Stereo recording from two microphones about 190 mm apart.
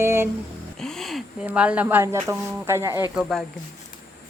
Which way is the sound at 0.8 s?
Centre (ahead or behind).